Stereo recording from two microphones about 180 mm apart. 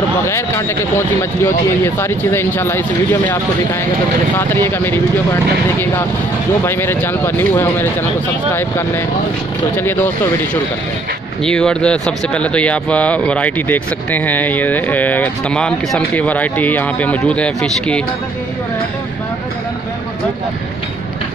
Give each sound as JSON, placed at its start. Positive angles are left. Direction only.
{"t": 0.3, "sound": "speech", "side_deg": 15}
{"t": 4.4, "sound": "speech", "side_deg": 15}